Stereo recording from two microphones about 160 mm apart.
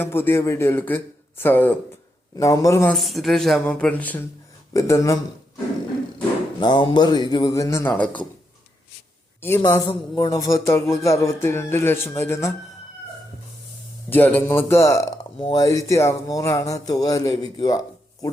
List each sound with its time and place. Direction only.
0.0 s a man's voice: 15° left (ahead or behind)
2.9 s speech: centre (ahead or behind)
4.7 s speech: 20° left (ahead or behind)
6.6 s speech: 30° left (ahead or behind); by 8.2 s 10° left (ahead or behind)
9.6 s a man's voice: 20° left (ahead or behind)
14.1 s a man's voice: 10° left (ahead or behind)